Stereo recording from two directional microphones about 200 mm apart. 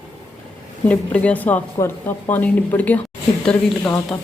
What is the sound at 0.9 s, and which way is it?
Speech, 5° left (ahead or behind).